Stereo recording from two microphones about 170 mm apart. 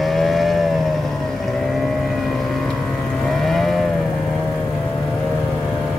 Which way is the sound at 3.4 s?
Centre (ahead or behind).